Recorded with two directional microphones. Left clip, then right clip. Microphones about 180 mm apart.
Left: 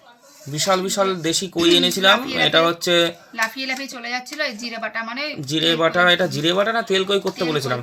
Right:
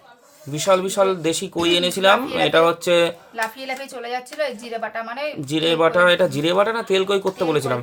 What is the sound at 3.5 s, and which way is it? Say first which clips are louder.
A woman's voice: left 3 dB; 40° right (ahead or behind).